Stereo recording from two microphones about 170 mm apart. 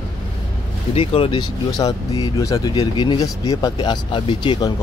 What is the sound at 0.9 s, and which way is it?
Speech, 35° left (ahead or behind).